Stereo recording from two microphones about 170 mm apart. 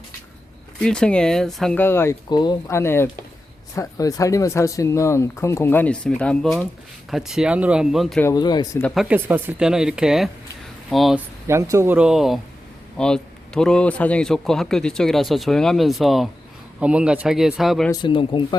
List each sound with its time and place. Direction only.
0.8 s a man's voice: 5° left (ahead or behind)
2.3 s a man's voice: 25° left (ahead or behind); by 8.2 s centre (ahead or behind)
8.2 s speech: 20° left (ahead or behind)
9.0 s a man's voice: 10° right (ahead or behind)
11.4 s a man's voice: 15° right (ahead or behind); by 17.9 s centre (ahead or behind)
17.9 s speech: 30° left (ahead or behind)